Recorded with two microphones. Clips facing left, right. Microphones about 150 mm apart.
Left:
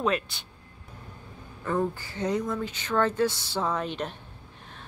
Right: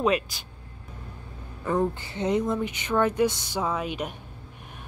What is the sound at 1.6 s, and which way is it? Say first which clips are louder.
Speech: right 2 dB; 15° right (ahead or behind).